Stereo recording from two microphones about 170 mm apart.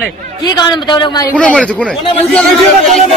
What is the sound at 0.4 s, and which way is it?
Speech, 25° left (ahead or behind).